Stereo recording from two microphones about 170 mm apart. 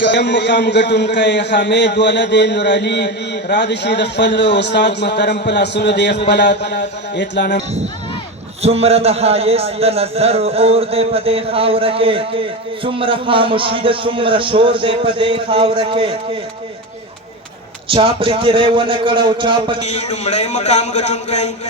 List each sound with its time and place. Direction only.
0.0 s a man's voice: 90° left
8.6 s a man's voice: 35° right (ahead or behind)
17.9 s a man's voice: 30° right (ahead or behind)
19.8 s a man's voice: 40° left (ahead or behind)